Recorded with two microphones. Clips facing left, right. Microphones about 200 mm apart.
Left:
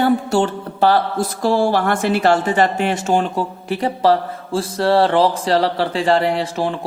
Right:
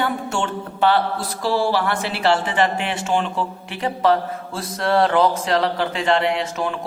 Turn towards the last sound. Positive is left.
turn(degrees=30)  # may be behind; listen again after turning